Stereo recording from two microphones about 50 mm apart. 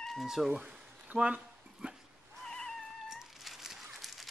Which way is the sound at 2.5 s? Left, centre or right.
Centre.